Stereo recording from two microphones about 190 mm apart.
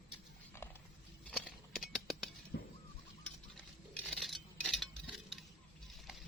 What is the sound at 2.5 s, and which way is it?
Bird, 65° left (ahead or behind).